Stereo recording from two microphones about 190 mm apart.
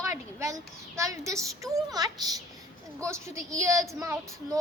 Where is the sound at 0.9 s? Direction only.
15° right (ahead or behind).